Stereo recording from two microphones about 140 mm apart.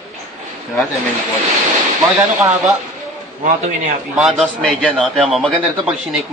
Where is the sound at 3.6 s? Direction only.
60° right (ahead or behind).